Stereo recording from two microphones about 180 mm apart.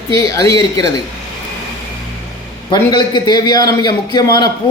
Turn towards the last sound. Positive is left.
turn(degrees=20)  # may be behind; listen again after turning